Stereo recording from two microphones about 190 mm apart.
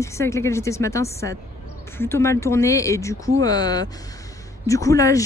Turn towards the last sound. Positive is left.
turn(degrees=15)  # may be behind; listen again after turning